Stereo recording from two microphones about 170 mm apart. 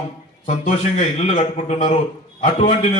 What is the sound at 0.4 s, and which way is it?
A man's voice, 45° left (ahead or behind).